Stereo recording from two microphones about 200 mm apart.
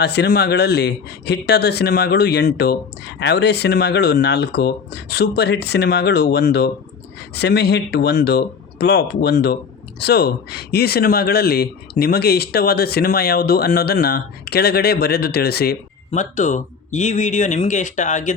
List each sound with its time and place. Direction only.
0.0 s speech: 55° left (ahead or behind)
16.1 s speech: 35° left (ahead or behind)